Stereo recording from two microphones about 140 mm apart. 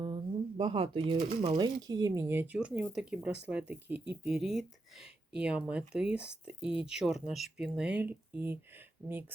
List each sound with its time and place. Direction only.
0.0 s speech: 40° right (ahead or behind)
1.5 s speech: 30° right (ahead or behind); by 8.5 s 10° right (ahead or behind)